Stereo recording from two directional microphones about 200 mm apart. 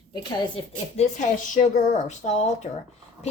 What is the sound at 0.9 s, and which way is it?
A woman's voice, 35° left (ahead or behind).